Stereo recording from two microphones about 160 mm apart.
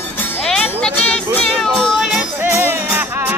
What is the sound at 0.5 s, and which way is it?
Music, 5° left (ahead or behind).